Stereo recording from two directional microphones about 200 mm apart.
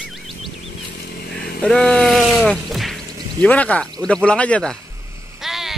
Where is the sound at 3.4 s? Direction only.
5° left (ahead or behind).